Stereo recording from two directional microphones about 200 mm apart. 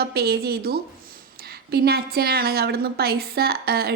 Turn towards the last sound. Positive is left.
turn(degrees=-50)  # may be behind; listen again after turning